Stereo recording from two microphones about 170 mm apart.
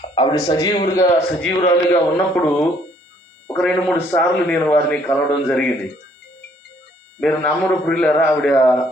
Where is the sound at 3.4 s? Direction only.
10° left (ahead or behind).